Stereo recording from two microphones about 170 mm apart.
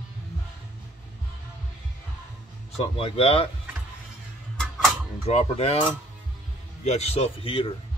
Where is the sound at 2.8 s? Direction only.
35° left (ahead or behind).